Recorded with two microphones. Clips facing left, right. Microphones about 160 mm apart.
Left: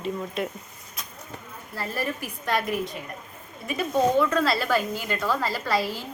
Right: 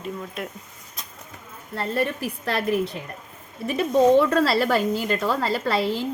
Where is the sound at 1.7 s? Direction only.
25° right (ahead or behind).